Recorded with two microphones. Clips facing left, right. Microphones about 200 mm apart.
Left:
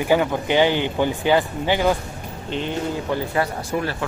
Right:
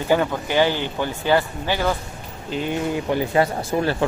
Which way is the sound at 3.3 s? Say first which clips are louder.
Right 3 dB; 25° right (ahead or behind).